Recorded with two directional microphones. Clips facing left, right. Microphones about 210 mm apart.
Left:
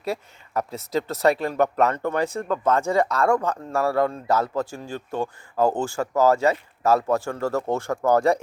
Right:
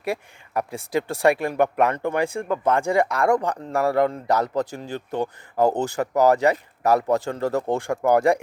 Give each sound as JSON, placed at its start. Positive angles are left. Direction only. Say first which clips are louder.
{"t": 0.0, "sound": "speech", "louder": "right 1 dB", "side_deg": -15}